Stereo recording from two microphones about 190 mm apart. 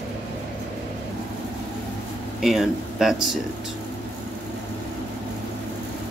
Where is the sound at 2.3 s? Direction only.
Centre (ahead or behind).